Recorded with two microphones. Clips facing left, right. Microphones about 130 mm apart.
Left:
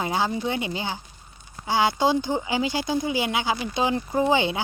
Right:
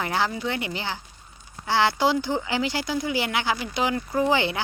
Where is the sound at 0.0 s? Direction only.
20° left (ahead or behind).